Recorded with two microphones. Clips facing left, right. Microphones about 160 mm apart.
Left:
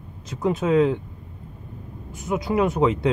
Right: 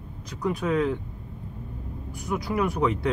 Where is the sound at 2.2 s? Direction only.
25° left (ahead or behind).